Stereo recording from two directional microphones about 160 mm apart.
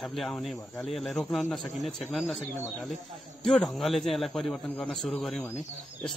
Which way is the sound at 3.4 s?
Centre (ahead or behind).